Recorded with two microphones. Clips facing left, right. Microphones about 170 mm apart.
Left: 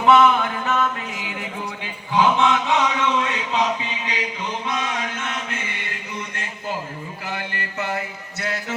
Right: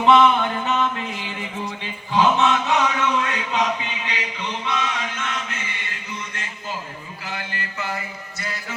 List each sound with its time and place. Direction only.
0.0 s a sound: centre (ahead or behind); by 4.4 s 40° left (ahead or behind)
4.6 s music: 45° left (ahead or behind)
7.3 s mantra: 55° left (ahead or behind)